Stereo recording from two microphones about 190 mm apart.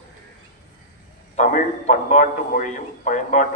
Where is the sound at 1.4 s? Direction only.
40° left (ahead or behind).